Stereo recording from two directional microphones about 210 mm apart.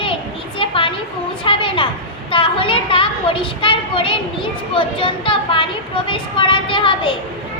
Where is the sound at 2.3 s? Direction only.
25° left (ahead or behind).